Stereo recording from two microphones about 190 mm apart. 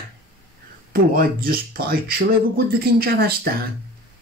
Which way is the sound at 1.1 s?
50° right (ahead or behind).